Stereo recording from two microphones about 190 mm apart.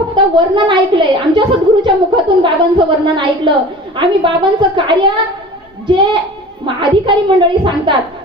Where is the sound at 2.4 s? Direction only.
25° right (ahead or behind).